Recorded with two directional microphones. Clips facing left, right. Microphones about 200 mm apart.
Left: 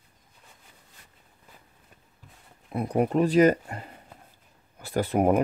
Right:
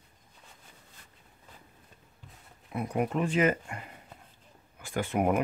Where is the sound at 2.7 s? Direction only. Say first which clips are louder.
Left 5 dB; 35° left (ahead or behind).